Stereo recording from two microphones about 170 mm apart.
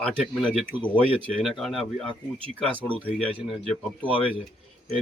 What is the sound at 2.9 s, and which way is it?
Speech, 30° left (ahead or behind).